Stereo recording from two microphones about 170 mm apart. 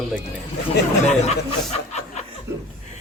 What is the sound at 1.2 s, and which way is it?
Speech, 40° left (ahead or behind).